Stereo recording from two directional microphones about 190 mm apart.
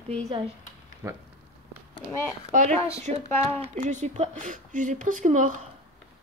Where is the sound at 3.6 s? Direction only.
40° right (ahead or behind).